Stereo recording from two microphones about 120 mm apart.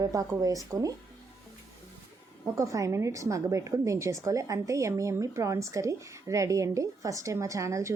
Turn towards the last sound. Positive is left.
turn(degrees=-25)  # may be behind; listen again after turning